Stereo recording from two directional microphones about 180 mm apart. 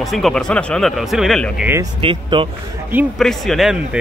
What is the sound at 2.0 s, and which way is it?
Speech, 30° right (ahead or behind).